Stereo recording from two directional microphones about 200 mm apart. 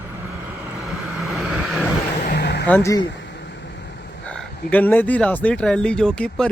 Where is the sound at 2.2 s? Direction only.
50° left (ahead or behind).